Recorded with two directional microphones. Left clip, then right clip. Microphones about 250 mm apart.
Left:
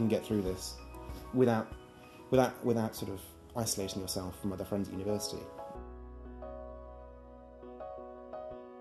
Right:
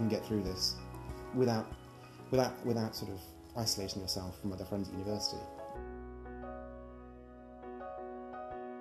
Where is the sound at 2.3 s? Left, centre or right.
Left.